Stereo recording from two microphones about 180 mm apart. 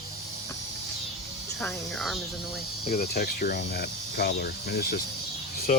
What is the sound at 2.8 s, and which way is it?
Cricket, 55° left (ahead or behind).